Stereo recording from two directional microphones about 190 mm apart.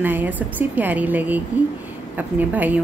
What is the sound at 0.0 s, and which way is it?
A woman's voice, 10° right (ahead or behind).